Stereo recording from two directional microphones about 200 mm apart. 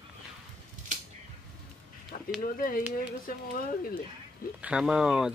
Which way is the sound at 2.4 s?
45° left (ahead or behind).